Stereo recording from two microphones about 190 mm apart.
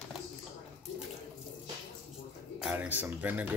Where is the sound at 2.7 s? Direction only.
10° right (ahead or behind).